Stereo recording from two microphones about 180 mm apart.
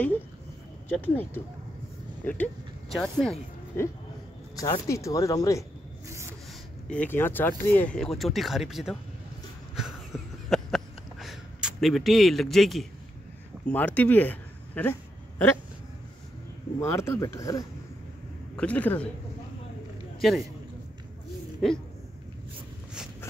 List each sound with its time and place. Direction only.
0.8 s speech: 10° left (ahead or behind)
6.9 s speech: 10° left (ahead or behind)
9.8 s a sound: centre (ahead or behind); by 15.5 s 15° left (ahead or behind)
16.8 s speech: 15° left (ahead or behind)
18.6 s speech: 10° left (ahead or behind)
20.2 s a man's voice: centre (ahead or behind)
21.6 s speech: centre (ahead or behind)